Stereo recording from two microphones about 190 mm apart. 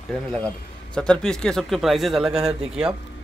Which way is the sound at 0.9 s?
5° left (ahead or behind).